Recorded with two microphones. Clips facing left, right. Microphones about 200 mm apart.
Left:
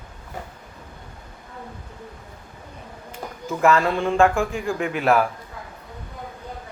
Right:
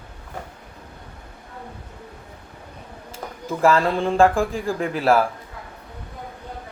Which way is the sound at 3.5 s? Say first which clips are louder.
Right 1 dB; 30° right (ahead or behind).